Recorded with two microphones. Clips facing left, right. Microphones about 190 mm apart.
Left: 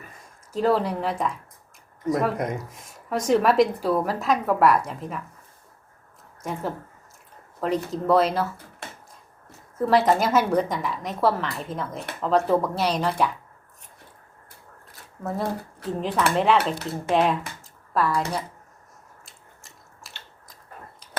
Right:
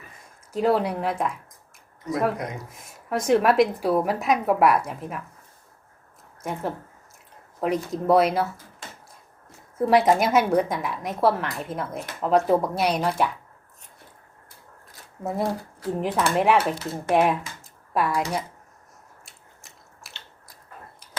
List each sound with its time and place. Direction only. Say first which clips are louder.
0.5 s a woman's voice: even; 10° right (ahead or behind)
2.8 s a woman's voice: right 1 dB; 10° right (ahead or behind)
6.4 s a woman's voice: even; 10° right (ahead or behind)
8.8 s a sound: left 3 dB; 65° left (ahead or behind)
9.7 s a woman's voice: right 1 dB; 10° right (ahead or behind)
15.2 s a woman's voice: right 1 dB; 15° right (ahead or behind)
17.6 s a sound: even; 15° right (ahead or behind)
19.2 s biting: left 1 dB; 10° right (ahead or behind)